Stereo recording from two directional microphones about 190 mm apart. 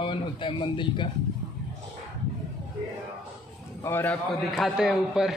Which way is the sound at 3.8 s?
10° left (ahead or behind).